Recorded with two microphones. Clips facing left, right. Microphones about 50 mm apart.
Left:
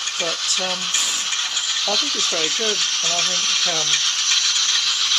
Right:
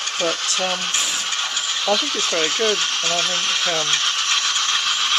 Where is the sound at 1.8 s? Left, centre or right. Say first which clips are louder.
Right 4 dB; right.